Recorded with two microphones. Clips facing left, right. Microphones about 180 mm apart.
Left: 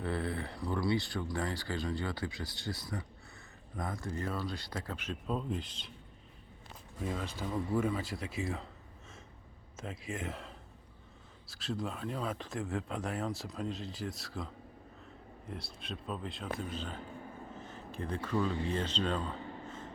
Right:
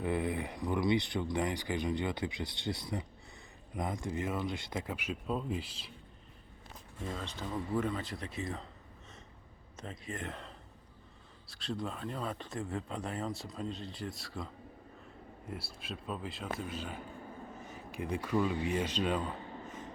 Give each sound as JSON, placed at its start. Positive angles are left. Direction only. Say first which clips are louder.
{"t": 0.0, "sound": "speech", "louder": "right 2 dB", "side_deg": -15}
{"t": 7.0, "sound": "speech", "louder": "left 3 dB", "side_deg": 5}
{"t": 9.7, "sound": "speech", "louder": "left 2 dB", "side_deg": 5}